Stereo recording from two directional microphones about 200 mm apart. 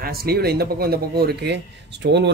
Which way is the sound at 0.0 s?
50° right (ahead or behind).